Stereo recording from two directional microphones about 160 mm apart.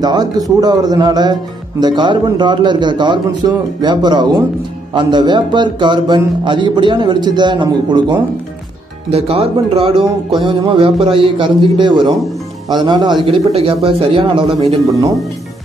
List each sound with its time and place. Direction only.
0.0 s speech: 25° right (ahead or behind)